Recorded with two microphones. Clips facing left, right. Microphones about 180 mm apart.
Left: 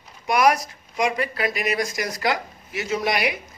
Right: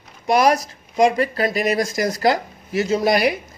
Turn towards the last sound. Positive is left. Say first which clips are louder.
# right 6 dB
turn(degrees=-35)  # may be behind; listen again after turning